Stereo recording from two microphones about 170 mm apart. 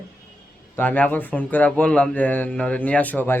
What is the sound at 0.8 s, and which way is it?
Speech, 10° left (ahead or behind).